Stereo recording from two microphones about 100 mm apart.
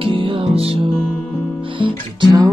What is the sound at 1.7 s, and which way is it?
Guitar, 55° right (ahead or behind).